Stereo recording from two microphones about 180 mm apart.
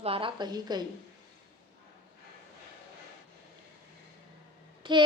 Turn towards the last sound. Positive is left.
turn(degrees=-25)  # may be behind; listen again after turning